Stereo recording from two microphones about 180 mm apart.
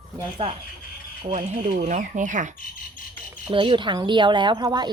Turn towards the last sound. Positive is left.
turn(degrees=-25)  # may be behind; listen again after turning